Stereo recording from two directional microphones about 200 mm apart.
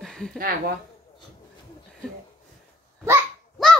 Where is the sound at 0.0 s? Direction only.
Centre (ahead or behind).